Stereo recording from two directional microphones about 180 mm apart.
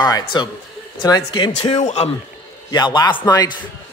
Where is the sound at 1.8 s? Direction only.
40° left (ahead or behind).